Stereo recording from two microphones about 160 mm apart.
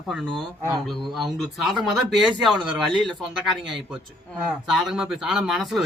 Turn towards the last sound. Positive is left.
turn(degrees=0)  # may be behind; listen again after turning